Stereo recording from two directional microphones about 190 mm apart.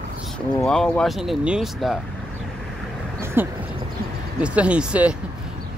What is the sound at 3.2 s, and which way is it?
Vehicle, 10° right (ahead or behind).